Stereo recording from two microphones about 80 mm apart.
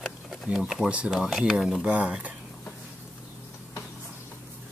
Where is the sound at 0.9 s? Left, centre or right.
Centre.